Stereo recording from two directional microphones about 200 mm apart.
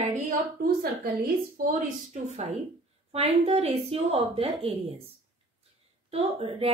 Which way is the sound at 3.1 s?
30° right (ahead or behind).